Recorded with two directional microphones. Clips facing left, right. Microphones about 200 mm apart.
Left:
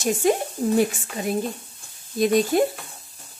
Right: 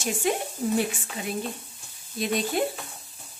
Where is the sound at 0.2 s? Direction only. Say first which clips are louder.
Left 5 dB; 40° left (ahead or behind).